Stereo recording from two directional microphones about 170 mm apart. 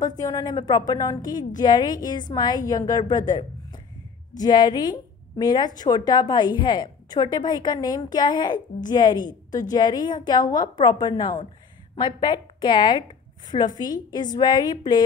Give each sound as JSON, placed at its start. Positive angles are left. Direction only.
{"t": 0.2, "sound": "a woman's voice", "side_deg": 20}